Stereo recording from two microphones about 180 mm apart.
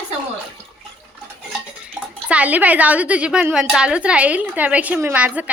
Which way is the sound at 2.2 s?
5° right (ahead or behind).